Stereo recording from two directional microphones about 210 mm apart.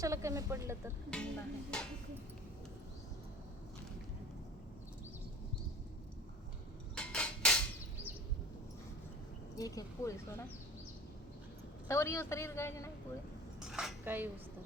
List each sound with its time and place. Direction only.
0.0 s speech: 15° right (ahead or behind)
1.1 s music: 5° left (ahead or behind)
6.9 s a sound: 5° left (ahead or behind)
9.6 s a man's voice: 15° left (ahead or behind)
11.9 s a man's voice: 15° left (ahead or behind)
13.7 s cutlery: 5° right (ahead or behind)